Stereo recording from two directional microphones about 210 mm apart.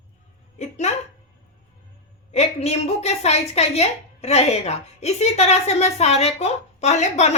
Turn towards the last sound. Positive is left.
turn(degrees=30)  # may be behind; listen again after turning